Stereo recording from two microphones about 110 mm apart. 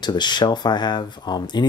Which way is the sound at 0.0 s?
40° left (ahead or behind).